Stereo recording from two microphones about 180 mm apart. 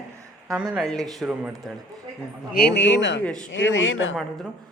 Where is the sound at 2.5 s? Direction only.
75° left (ahead or behind); by 4.1 s 90° left.